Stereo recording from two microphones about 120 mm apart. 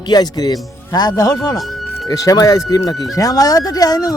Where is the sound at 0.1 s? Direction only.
35° left (ahead or behind).